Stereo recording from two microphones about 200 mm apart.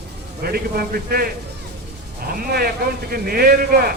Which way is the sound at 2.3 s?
45° right (ahead or behind).